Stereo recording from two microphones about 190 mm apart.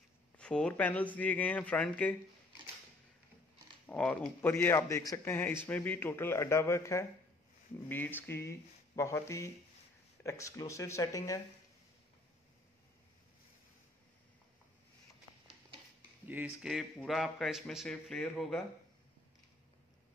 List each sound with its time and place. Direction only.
0.4 s a man's voice: 5° left (ahead or behind)
3.8 s a man's voice: 5° left (ahead or behind)
16.3 s a man's voice: 5° right (ahead or behind)